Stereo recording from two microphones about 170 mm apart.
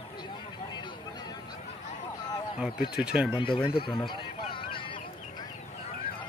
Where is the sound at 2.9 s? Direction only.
5° right (ahead or behind).